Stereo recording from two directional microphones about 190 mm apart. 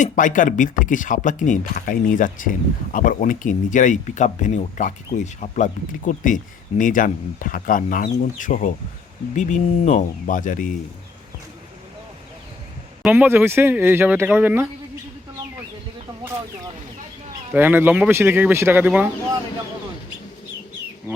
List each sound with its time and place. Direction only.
0.0 s speech: 45° left (ahead or behind)
13.0 s speech: 10° right (ahead or behind)
17.5 s speech: 10° right (ahead or behind)